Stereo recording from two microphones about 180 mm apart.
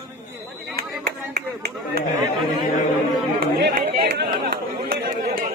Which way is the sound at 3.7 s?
60° right (ahead or behind).